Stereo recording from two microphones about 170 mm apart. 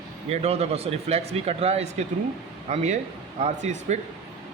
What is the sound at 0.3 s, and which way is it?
Speech, 35° right (ahead or behind).